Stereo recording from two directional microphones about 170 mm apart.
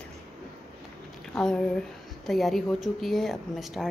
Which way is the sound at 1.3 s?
5° left (ahead or behind).